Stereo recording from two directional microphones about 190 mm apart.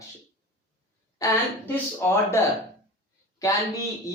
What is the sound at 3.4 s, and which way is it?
Speech, 15° left (ahead or behind).